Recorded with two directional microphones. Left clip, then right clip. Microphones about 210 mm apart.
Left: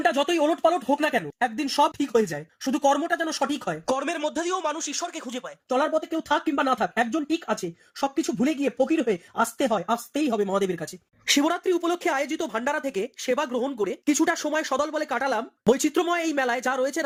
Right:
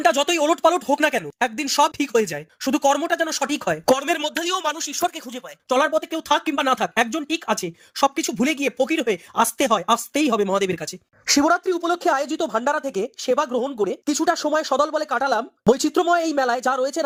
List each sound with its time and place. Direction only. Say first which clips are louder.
0.0 s speech: right 4 dB; 55° right (ahead or behind); by 4.9 s 40° right (ahead or behind)
5.6 s speech: right 5 dB; 55° right (ahead or behind)
11.3 s speech: right 6 dB; 10° right (ahead or behind)